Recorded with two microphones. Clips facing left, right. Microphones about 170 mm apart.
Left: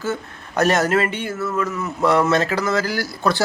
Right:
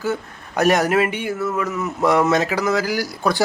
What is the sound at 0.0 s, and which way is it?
Speech, 15° right (ahead or behind).